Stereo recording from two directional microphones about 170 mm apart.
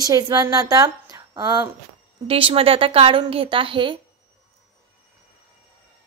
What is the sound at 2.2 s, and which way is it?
A woman's voice, 30° right (ahead or behind).